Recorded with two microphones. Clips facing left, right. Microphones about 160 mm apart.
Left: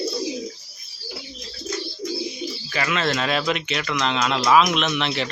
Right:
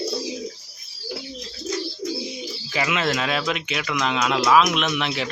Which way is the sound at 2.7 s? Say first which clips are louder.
Even; 15° right (ahead or behind).